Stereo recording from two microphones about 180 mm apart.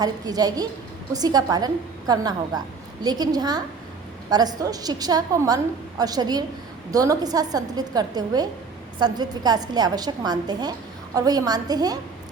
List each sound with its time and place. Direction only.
0.0 s a woman's voice: 20° right (ahead or behind)